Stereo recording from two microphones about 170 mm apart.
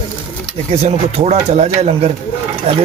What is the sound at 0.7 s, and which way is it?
Speech, 40° right (ahead or behind).